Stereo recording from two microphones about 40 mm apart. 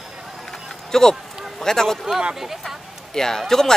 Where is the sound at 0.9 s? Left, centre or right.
Centre.